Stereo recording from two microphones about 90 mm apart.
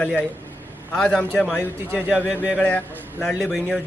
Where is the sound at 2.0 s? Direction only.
15° right (ahead or behind).